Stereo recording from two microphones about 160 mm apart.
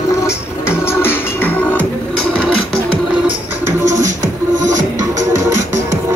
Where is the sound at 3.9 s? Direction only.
20° right (ahead or behind).